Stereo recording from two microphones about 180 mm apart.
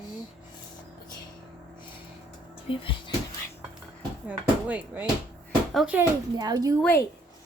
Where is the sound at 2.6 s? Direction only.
30° left (ahead or behind).